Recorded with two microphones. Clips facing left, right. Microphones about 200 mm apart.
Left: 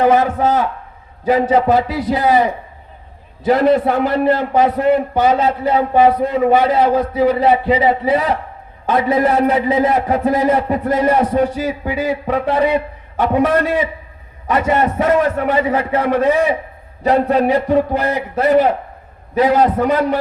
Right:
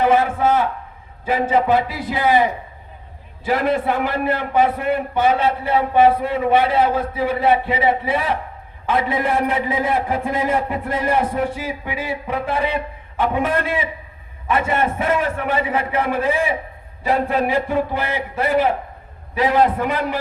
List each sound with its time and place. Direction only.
0.0 s a man's voice: 40° left (ahead or behind)